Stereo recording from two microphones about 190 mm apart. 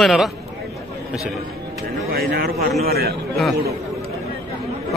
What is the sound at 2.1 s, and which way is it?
A man's voice, 55° right (ahead or behind).